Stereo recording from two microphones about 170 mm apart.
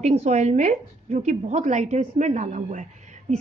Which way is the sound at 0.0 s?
40° right (ahead or behind).